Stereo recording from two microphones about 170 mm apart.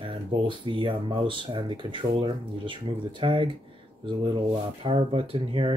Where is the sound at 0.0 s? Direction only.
30° right (ahead or behind).